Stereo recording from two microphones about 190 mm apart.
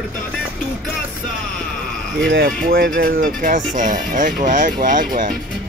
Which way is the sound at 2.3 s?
55° right (ahead or behind).